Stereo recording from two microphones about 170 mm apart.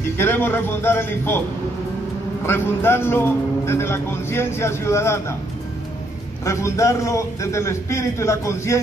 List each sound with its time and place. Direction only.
0.2 s a man's voice: 10° left (ahead or behind)
2.4 s a man's voice: 15° left (ahead or behind)
6.4 s a man's voice: 20° left (ahead or behind)